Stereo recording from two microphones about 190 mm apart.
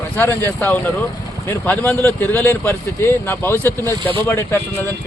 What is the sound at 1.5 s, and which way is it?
Speech, 10° left (ahead or behind).